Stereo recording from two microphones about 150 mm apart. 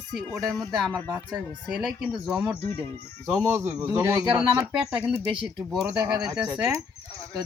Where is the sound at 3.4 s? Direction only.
15° right (ahead or behind).